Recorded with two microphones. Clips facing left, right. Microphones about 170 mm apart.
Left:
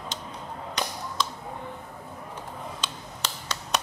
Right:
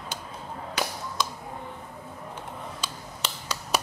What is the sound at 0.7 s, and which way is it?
Whip, 5° right (ahead or behind).